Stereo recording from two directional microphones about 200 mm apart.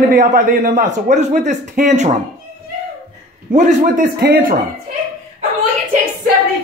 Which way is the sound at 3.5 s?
40° right (ahead or behind).